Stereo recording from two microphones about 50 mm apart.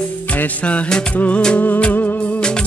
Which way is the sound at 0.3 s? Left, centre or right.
Left.